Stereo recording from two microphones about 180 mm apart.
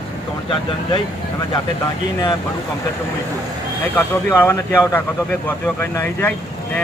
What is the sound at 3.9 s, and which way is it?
Speech, 10° left (ahead or behind).